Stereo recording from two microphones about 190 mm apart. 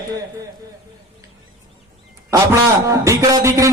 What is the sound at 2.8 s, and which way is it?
Music, 15° right (ahead or behind).